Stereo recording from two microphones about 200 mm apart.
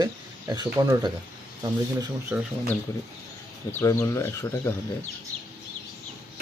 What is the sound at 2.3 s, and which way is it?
Speech, 5° right (ahead or behind).